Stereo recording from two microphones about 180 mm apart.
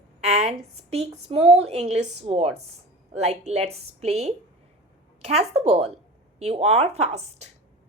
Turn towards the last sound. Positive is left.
turn(degrees=-35)  # may be behind; listen again after turning